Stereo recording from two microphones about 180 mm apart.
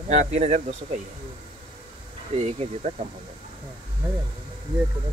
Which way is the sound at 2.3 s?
35° right (ahead or behind).